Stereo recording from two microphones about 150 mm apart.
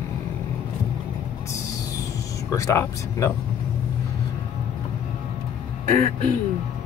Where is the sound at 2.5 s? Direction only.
20° left (ahead or behind).